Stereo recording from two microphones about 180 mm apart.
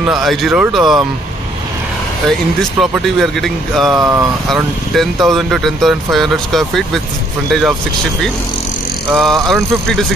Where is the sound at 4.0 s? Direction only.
15° right (ahead or behind).